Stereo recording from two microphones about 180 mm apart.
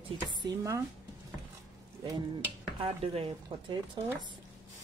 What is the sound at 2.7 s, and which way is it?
Speech, 30° right (ahead or behind).